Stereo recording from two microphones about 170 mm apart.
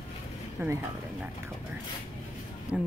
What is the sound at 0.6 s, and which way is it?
Speech, 15° right (ahead or behind).